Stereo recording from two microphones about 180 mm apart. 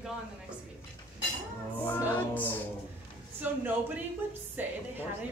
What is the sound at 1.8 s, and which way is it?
A capella, 10° left (ahead or behind).